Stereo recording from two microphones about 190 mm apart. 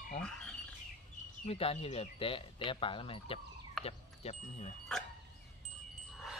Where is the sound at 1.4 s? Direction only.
30° left (ahead or behind).